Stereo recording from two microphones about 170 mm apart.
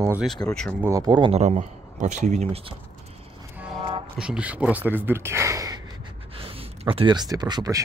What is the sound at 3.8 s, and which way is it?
Music, 35° right (ahead or behind).